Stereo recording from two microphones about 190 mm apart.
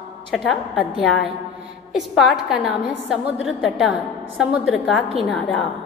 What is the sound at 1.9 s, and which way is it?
A woman's voice, centre (ahead or behind).